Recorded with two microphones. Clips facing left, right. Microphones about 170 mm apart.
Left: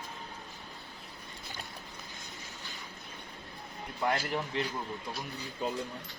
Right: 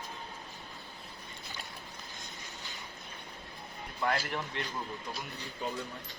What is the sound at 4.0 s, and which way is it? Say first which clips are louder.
Speech: left 1 dB; 20° left (ahead or behind).